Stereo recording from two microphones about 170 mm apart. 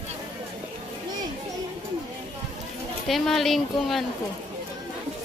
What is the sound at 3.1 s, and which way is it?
Speech, centre (ahead or behind).